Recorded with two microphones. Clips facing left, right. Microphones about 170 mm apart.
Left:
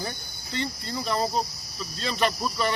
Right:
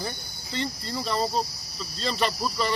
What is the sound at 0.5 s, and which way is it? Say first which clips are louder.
Speech: even; centre (ahead or behind).